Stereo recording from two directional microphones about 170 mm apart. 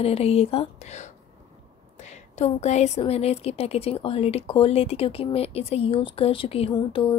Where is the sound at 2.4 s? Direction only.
40° left (ahead or behind).